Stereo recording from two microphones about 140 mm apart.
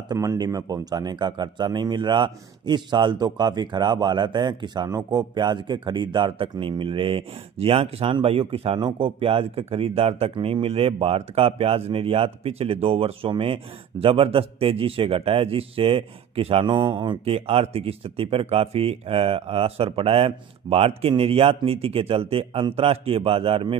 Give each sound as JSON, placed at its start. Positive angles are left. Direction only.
{"t": 0.1, "sound": "speech", "side_deg": -30}